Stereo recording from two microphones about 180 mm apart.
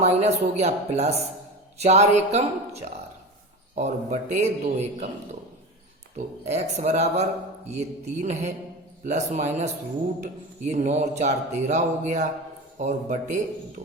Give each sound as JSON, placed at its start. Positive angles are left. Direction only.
{"t": 0.0, "sound": "speech", "side_deg": -35}
{"t": 6.1, "sound": "speech", "side_deg": -40}
{"t": 10.7, "sound": "speech", "side_deg": -40}